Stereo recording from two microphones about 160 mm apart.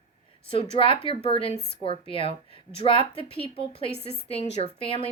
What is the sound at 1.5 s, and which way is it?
Speech, 90° left.